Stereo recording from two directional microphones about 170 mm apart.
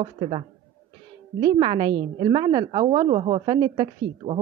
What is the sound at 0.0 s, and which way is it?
A man's voice, 35° right (ahead or behind).